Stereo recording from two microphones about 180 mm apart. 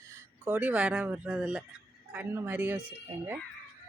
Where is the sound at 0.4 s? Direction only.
10° right (ahead or behind).